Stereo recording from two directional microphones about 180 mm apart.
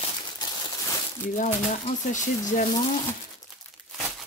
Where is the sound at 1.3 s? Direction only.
45° left (ahead or behind).